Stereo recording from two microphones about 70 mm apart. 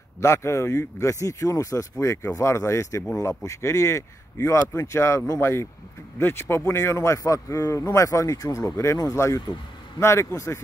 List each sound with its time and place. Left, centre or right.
0.2 s a man's voice: left
7.0 s speech: left